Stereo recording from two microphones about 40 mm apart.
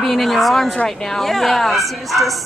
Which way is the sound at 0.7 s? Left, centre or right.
Centre.